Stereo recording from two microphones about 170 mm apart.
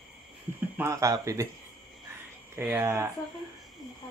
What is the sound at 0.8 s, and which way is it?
Speech, 20° right (ahead or behind).